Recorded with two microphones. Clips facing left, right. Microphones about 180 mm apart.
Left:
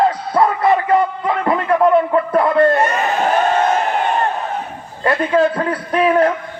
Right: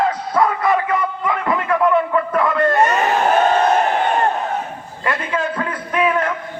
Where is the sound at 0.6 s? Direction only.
30° left (ahead or behind).